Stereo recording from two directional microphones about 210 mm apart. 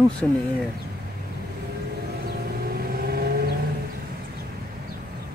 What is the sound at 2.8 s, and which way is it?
Vehicle, 45° right (ahead or behind).